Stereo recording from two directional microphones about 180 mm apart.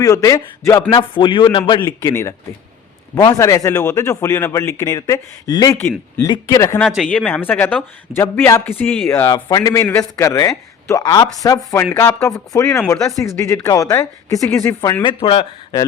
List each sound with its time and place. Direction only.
0.0 s a woman's voice: 20° left (ahead or behind)
6.7 s a man's voice: centre (ahead or behind); by 15.1 s 20° left (ahead or behind)
15.2 s a woman's voice: 30° left (ahead or behind)